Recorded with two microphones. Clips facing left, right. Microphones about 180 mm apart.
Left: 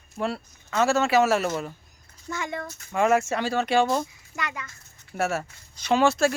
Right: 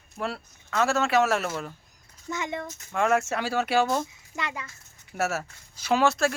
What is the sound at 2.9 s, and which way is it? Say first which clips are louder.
Speech: left 2 dB; centre (ahead or behind).